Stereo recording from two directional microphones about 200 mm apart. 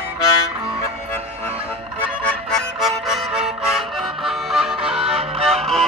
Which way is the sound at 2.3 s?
5° left (ahead or behind).